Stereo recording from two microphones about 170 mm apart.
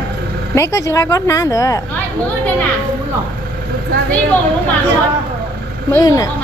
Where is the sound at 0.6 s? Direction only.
15° left (ahead or behind).